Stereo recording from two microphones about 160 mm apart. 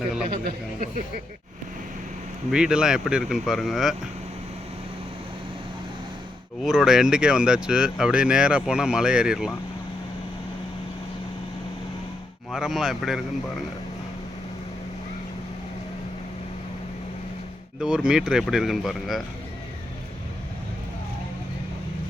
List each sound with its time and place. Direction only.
0.4 s speech: 55° right (ahead or behind)
2.5 s speech: 5° right (ahead or behind)
6.6 s speech: centre (ahead or behind)
12.5 s speech: centre (ahead or behind)
17.7 s speech: 5° right (ahead or behind)